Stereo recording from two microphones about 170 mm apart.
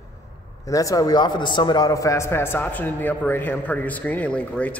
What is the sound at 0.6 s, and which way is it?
A man's voice, 20° left (ahead or behind).